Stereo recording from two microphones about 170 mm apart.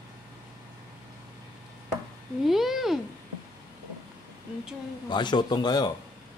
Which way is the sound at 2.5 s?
Centre (ahead or behind).